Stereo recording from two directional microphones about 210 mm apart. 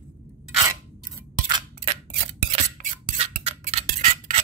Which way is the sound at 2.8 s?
35° right (ahead or behind).